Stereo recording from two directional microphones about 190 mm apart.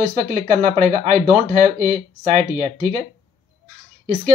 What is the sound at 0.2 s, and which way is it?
Speech, 40° right (ahead or behind).